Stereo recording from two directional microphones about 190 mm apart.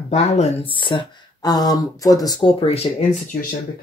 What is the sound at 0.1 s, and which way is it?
Speech, 35° left (ahead or behind).